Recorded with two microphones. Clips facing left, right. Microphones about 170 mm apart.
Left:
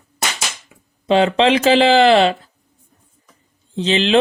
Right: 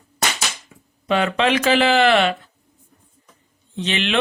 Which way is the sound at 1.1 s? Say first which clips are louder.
Left 5 dB; 30° left (ahead or behind).